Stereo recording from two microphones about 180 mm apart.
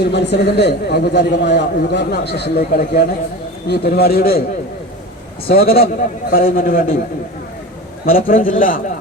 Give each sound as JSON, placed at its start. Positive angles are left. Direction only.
{"t": 0.0, "sound": "a man's voice", "side_deg": 70}
{"t": 5.5, "sound": "a man's voice", "side_deg": 55}
{"t": 8.3, "sound": "a man's voice", "side_deg": 50}